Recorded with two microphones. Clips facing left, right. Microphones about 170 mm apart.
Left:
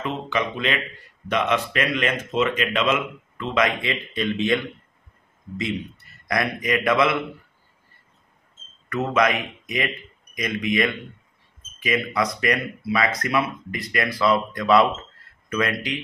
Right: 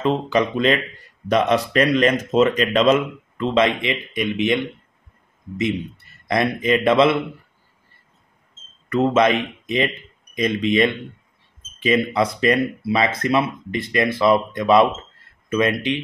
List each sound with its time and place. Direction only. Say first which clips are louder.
0.0 s speech: right 7 dB; 35° right (ahead or behind); by 4.6 s 15° right (ahead or behind)
6.2 s speech: right 5 dB; 25° right (ahead or behind)
8.8 s speech: right 5 dB; 30° right (ahead or behind)